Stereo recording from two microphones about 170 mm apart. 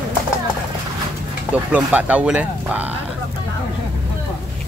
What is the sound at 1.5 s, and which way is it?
Speech, 10° right (ahead or behind).